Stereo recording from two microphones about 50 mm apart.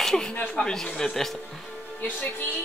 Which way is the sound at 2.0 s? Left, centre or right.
Left.